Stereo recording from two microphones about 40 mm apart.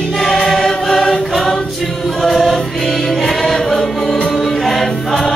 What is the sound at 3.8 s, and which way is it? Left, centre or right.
Music, centre.